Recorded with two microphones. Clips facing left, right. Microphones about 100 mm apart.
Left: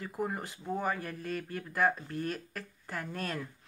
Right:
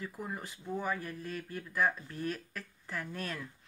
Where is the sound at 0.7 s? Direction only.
50° left (ahead or behind).